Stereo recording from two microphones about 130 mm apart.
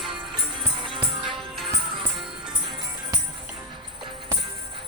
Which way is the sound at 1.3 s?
Centre (ahead or behind).